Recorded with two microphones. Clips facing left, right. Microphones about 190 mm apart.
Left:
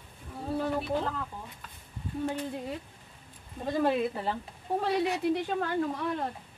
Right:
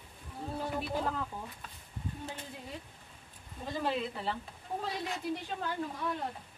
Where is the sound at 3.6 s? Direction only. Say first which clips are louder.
Left 7 dB; 50° left (ahead or behind).